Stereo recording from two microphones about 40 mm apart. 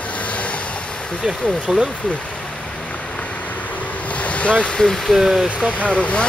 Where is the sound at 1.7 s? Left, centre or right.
Centre.